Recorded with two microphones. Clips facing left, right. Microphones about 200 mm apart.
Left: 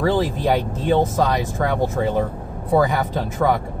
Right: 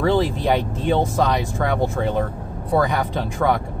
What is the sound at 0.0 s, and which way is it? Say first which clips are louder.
Speech: even; centre (ahead or behind).